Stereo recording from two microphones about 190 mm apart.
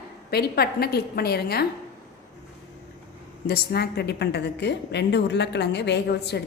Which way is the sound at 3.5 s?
55° left (ahead or behind).